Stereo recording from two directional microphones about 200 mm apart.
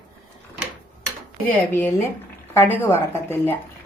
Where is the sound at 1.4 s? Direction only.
10° left (ahead or behind).